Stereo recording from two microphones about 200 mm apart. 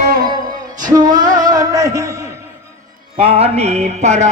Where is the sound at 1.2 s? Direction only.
40° right (ahead or behind).